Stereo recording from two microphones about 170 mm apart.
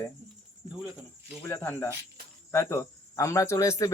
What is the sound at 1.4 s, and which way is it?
Speech, 15° left (ahead or behind).